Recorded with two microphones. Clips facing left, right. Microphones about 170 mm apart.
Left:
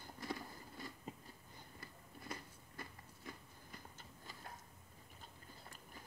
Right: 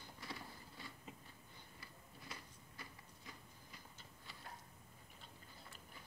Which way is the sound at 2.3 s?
50° left (ahead or behind).